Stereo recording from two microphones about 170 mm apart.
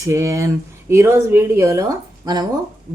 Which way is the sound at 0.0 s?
15° right (ahead or behind).